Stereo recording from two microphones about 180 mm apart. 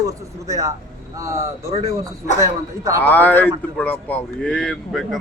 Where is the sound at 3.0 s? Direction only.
10° left (ahead or behind).